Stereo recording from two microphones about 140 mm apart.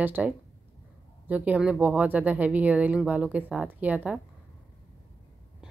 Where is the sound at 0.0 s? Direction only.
10° right (ahead or behind).